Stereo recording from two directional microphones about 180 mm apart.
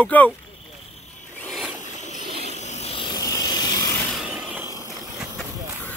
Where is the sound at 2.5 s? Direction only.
40° left (ahead or behind); by 4.0 s 20° left (ahead or behind).